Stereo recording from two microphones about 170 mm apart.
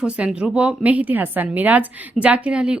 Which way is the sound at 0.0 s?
5° right (ahead or behind).